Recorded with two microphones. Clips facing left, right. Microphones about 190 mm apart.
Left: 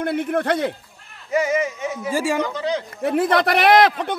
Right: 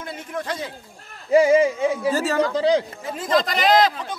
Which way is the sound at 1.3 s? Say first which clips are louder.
Right 6 dB; 30° right (ahead or behind).